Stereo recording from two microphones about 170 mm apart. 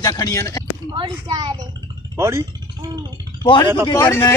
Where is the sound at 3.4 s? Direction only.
30° left (ahead or behind).